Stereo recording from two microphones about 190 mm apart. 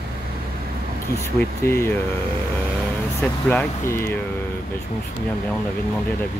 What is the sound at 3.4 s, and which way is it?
Speech, 10° left (ahead or behind).